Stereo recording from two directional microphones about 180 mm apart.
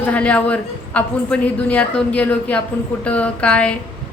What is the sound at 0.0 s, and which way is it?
A man's voice, 10° left (ahead or behind).